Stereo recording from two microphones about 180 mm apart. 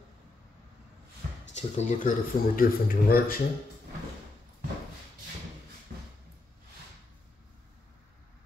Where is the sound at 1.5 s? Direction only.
40° left (ahead or behind).